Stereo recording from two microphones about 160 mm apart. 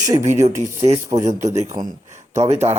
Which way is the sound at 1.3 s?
45° right (ahead or behind).